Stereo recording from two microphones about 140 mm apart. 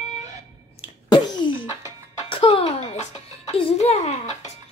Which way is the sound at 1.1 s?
30° left (ahead or behind).